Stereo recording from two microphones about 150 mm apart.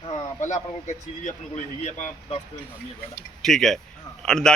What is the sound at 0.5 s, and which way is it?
Speech, 55° left (ahead or behind).